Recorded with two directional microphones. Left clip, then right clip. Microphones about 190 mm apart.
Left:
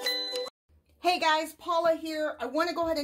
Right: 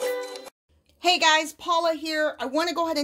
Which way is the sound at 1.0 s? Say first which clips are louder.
Right 6 dB; 20° right (ahead or behind).